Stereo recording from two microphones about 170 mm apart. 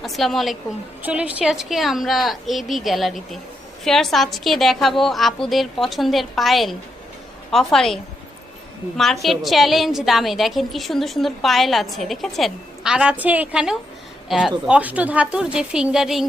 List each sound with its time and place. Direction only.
0.0 s a woman's voice: centre (ahead or behind)
9.2 s a woman's voice: centre (ahead or behind)